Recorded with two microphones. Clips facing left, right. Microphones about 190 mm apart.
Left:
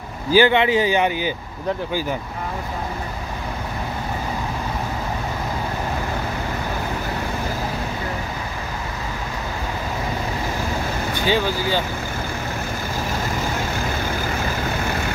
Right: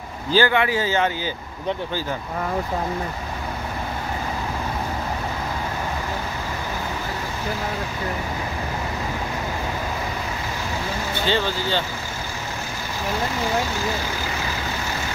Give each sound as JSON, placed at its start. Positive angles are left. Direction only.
{"t": 0.3, "sound": "speech", "side_deg": 20}
{"t": 11.1, "sound": "speech", "side_deg": 10}